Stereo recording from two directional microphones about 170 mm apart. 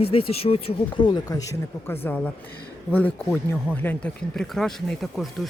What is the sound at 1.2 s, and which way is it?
Speech, 20° left (ahead or behind).